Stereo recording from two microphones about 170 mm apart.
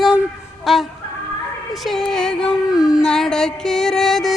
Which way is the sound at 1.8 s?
Centre (ahead or behind).